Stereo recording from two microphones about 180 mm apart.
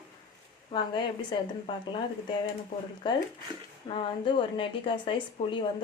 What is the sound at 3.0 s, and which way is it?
Speech, 25° left (ahead or behind).